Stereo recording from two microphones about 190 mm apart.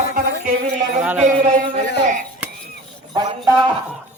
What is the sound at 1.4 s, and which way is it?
Speech, 40° right (ahead or behind).